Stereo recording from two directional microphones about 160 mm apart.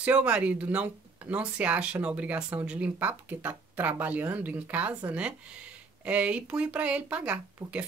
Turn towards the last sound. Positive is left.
turn(degrees=-10)  # may be behind; listen again after turning